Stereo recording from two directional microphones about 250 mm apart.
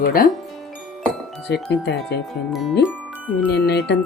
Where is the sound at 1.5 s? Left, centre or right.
Left.